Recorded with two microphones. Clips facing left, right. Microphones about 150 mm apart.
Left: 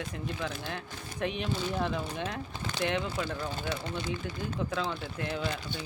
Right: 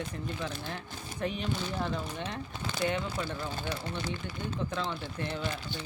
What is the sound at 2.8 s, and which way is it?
Speech, 90° left.